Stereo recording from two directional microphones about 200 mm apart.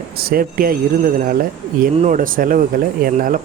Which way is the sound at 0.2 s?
45° right (ahead or behind).